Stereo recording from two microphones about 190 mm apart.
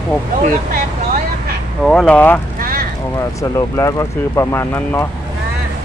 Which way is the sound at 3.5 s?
20° left (ahead or behind).